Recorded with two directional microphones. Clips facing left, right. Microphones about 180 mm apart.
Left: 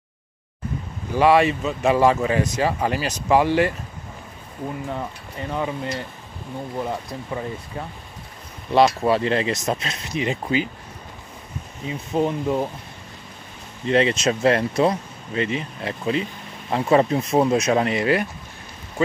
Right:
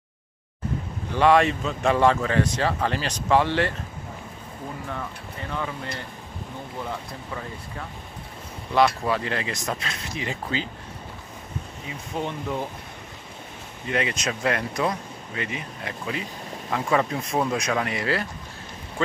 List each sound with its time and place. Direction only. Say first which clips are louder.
1.1 s speech: left 2 dB; 5° left (ahead or behind)
4.8 s speech: left 4 dB; 20° left (ahead or behind)
11.8 s speech: left 11 dB; 25° left (ahead or behind)
12.2 s speech: left 7 dB; 15° left (ahead or behind)
13.8 s speech: left 8 dB; 25° left (ahead or behind); by 19.1 s 10° left (ahead or behind)